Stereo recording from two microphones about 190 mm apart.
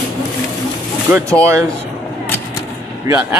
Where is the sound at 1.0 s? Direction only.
15° right (ahead or behind).